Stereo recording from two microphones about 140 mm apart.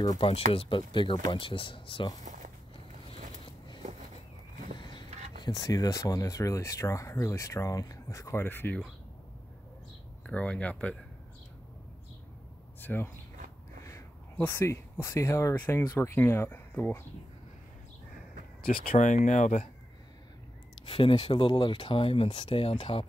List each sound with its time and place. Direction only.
0.5 s speech: 40° left (ahead or behind)
2.2 s walk: 60° right (ahead or behind)
4.7 s speech: 30° left (ahead or behind); by 8.8 s 15° left (ahead or behind)
10.2 s speech: 10° left (ahead or behind)
12.8 s speech: 15° left (ahead or behind)
15.8 s speech: 30° left (ahead or behind)
16.2 s speech: 15° left (ahead or behind)
18.6 s speech: 90° left; by 19.7 s 60° left (ahead or behind)
20.8 s speech: 40° left (ahead or behind)